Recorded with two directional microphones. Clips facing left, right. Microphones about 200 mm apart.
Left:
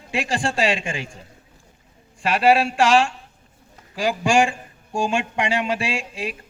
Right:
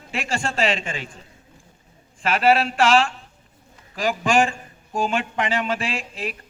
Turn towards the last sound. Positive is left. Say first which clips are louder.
# left 2 dB
turn(degrees=15)  # may be behind; listen again after turning